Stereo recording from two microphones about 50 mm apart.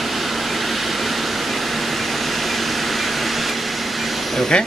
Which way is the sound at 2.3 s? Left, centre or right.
Centre.